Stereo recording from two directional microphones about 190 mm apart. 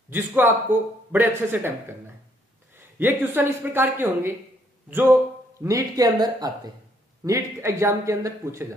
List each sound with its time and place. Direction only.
0.1 s a man's voice: 10° right (ahead or behind)
2.7 s a man's voice: 10° right (ahead or behind)